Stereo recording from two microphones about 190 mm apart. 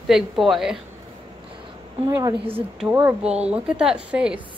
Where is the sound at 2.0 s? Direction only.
15° right (ahead or behind).